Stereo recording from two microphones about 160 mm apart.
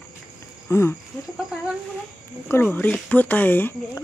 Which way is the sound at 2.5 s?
10° left (ahead or behind).